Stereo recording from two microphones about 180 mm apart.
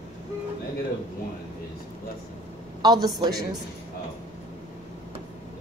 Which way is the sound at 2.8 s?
20° right (ahead or behind).